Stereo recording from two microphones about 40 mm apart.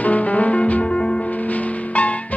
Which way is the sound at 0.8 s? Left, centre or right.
Left.